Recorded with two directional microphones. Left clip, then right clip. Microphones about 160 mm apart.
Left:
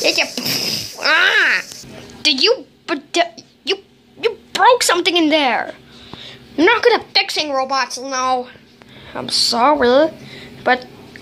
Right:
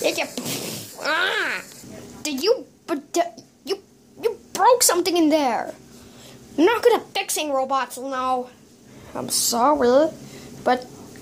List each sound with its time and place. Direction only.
0.0 s a sound: centre (ahead or behind)
6.2 s a woman's voice: 10° right (ahead or behind)
8.1 s a woman's voice: centre (ahead or behind)